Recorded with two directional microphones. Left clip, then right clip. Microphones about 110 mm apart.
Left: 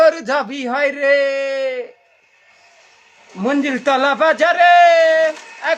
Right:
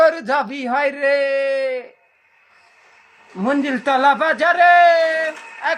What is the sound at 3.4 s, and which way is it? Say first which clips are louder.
A man's voice: left 2 dB; 30° left (ahead or behind).